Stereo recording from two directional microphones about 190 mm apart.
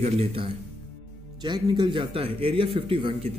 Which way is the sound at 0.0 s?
30° right (ahead or behind).